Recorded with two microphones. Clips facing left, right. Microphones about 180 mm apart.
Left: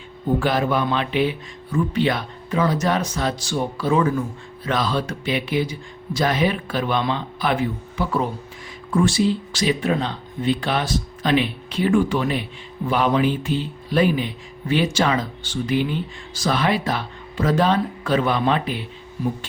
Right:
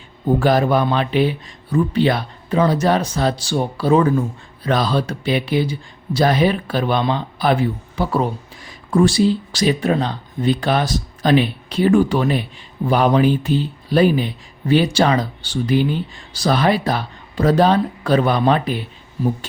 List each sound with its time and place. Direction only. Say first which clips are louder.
0.3 s speech: right 5 dB; 40° right (ahead or behind)